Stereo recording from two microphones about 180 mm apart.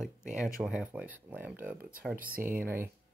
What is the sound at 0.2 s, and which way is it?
Speech, 45° right (ahead or behind).